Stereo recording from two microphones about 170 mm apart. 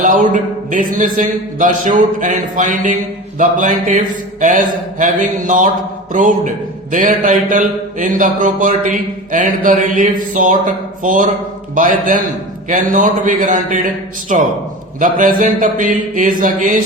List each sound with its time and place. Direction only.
0.0 s speech: 50° right (ahead or behind)